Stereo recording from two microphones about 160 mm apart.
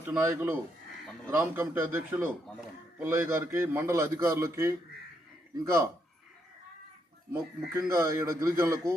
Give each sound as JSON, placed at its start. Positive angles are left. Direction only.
{"t": 0.0, "sound": "a man's voice", "side_deg": -10}
{"t": 7.7, "sound": "a man's voice", "side_deg": -20}